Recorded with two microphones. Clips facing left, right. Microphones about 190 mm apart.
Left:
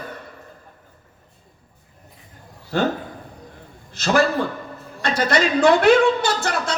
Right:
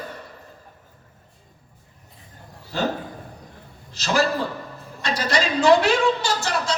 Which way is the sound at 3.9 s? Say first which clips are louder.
Left 3 dB; 55° left (ahead or behind).